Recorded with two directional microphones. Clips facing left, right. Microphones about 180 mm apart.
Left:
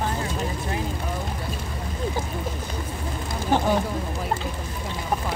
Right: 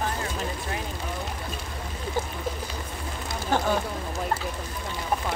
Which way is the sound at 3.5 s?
15° left (ahead or behind).